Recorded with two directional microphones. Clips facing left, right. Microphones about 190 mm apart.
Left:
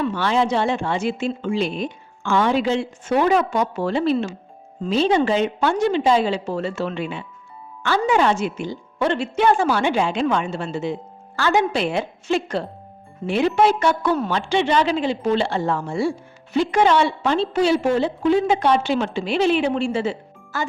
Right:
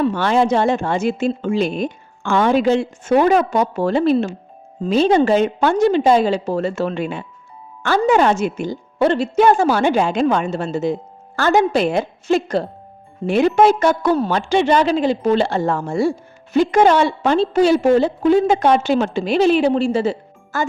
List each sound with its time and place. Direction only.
0.0 s a woman's voice: 45° right (ahead or behind)